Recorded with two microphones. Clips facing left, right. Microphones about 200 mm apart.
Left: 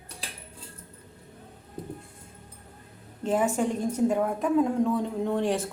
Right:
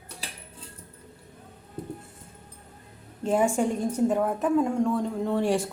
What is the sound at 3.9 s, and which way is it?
Speech, 5° left (ahead or behind).